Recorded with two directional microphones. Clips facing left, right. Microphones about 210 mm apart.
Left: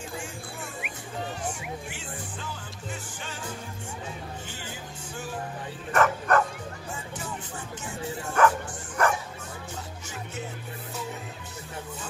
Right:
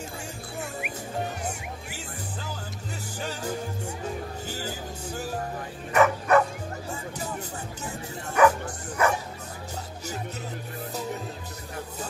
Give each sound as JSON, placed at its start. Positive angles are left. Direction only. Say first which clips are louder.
{"t": 3.2, "sound": "music", "louder": "right 6 dB", "side_deg": -40}
{"t": 5.9, "sound": "bow-wow", "louder": "right 3 dB", "side_deg": -5}
{"t": 8.4, "sound": "music", "louder": "right 3 dB", "side_deg": -10}